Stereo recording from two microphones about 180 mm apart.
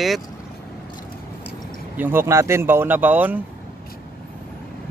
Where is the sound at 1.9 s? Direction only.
10° right (ahead or behind).